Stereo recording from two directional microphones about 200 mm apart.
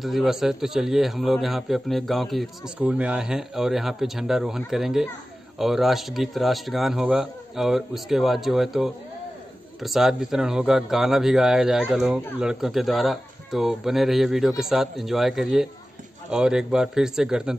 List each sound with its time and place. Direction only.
0.0 s a man's voice: centre (ahead or behind)